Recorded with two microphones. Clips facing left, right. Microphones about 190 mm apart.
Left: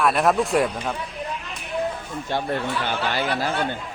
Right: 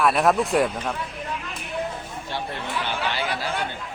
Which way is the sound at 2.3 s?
45° left (ahead or behind).